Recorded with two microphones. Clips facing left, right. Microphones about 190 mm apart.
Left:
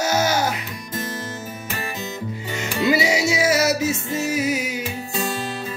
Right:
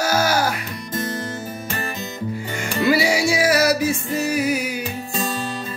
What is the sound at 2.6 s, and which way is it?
Music, 20° left (ahead or behind).